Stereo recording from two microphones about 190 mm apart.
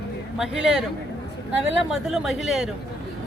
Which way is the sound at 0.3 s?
5° right (ahead or behind).